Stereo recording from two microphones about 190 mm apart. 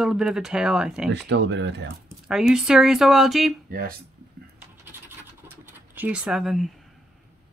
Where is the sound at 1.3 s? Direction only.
70° right (ahead or behind).